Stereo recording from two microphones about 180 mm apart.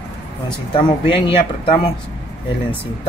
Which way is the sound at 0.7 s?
25° left (ahead or behind).